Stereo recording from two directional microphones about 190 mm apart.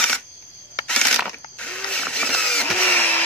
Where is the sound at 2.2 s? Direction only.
5° left (ahead or behind).